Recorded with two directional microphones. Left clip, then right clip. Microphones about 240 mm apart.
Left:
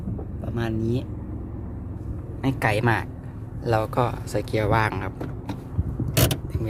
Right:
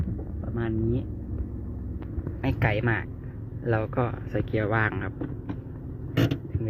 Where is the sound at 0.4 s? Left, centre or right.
Centre.